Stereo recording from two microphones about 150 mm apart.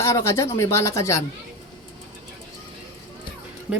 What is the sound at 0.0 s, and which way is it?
Speech, 20° left (ahead or behind).